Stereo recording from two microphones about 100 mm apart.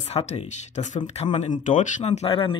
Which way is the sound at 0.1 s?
90° left.